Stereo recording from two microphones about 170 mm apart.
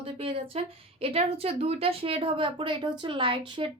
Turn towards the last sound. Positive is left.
turn(degrees=-30)  # may be behind; listen again after turning